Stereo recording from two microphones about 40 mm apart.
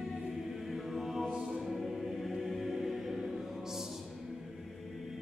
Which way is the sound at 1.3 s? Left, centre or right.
Centre.